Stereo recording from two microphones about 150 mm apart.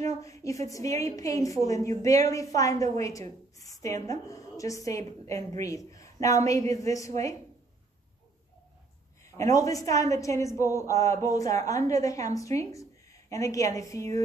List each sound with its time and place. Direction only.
0.0 s a woman's voice: 20° left (ahead or behind)
9.4 s a woman's voice: 20° left (ahead or behind)